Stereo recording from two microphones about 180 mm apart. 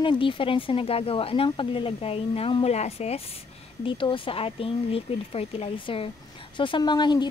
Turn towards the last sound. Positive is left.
turn(degrees=25)  # may be behind; listen again after turning